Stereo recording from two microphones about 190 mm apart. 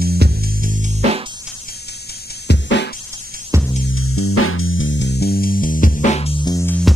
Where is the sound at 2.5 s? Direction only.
65° left (ahead or behind).